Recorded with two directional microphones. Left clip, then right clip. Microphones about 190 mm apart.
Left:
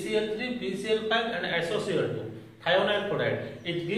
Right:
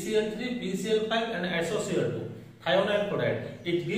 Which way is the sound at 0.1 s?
20° left (ahead or behind).